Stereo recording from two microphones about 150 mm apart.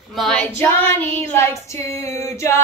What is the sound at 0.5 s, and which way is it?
A woman's voice, 15° left (ahead or behind).